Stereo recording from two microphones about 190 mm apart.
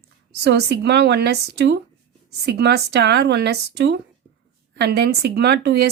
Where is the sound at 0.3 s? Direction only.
60° right (ahead or behind).